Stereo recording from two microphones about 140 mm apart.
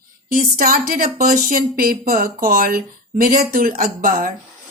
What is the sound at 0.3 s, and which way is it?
Speech, 90° right.